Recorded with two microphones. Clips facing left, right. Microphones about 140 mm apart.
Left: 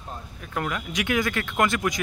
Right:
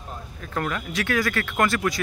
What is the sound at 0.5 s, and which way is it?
Speech, 10° left (ahead or behind).